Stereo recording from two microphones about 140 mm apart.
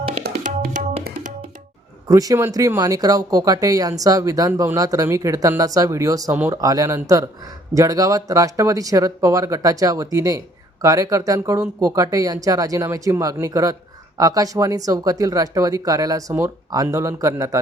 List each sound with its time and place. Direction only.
0.1 s tabla: 65° right (ahead or behind)
2.0 s speech: 25° right (ahead or behind)
6.3 s speech: 10° right (ahead or behind)
6.6 s speech: 25° right (ahead or behind)